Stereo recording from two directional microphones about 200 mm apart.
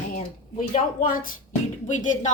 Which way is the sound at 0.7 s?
40° left (ahead or behind).